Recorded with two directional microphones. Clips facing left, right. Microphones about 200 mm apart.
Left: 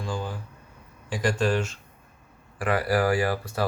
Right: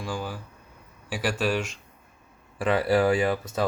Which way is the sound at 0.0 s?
10° right (ahead or behind).